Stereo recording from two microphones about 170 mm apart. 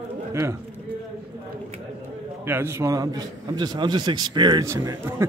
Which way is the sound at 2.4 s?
15° right (ahead or behind).